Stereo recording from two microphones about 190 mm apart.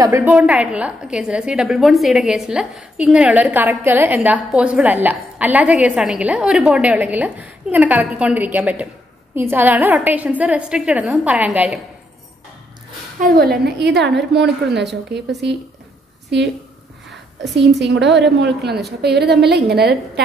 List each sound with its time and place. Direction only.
0.0 s a woman's voice: 15° right (ahead or behind)
13.2 s a woman's voice: 50° right (ahead or behind)
17.6 s a woman's voice: 65° right (ahead or behind)